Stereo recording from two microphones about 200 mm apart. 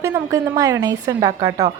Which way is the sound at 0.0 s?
15° right (ahead or behind).